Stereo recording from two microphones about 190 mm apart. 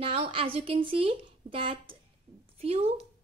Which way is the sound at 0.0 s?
30° right (ahead or behind).